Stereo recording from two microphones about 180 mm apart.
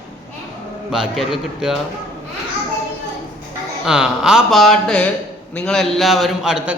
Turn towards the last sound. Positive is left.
turn(degrees=-5)  # may be behind; listen again after turning